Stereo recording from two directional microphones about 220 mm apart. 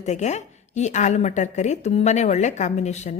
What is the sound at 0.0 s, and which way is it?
A woman's voice, 30° left (ahead or behind).